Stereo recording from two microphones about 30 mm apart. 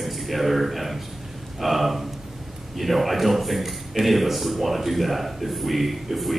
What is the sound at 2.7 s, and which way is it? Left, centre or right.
A man's voice, centre.